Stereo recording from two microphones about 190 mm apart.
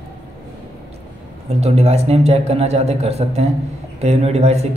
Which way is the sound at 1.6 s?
35° right (ahead or behind).